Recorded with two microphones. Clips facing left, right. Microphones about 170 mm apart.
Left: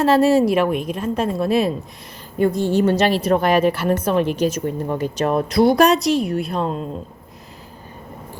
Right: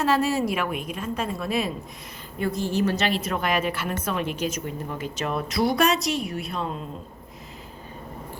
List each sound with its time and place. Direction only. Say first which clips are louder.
0.0 s speech: left 8 dB; 30° left (ahead or behind)
2.8 s speech: left 7 dB; 35° left (ahead or behind)